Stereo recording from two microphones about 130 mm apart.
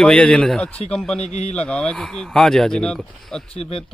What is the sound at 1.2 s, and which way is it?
Speech, 60° left (ahead or behind).